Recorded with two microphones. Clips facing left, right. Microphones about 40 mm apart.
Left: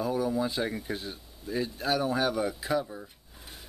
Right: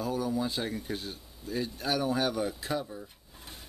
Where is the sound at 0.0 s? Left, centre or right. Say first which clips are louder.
Left 2 dB; centre.